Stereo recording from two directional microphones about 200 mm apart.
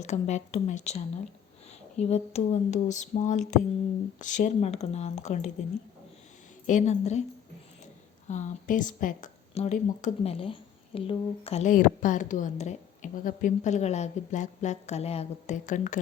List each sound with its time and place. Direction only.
0.0 s a woman's voice: 35° left (ahead or behind)
6.7 s a woman's voice: 35° left (ahead or behind)
8.3 s a woman's voice: 40° left (ahead or behind)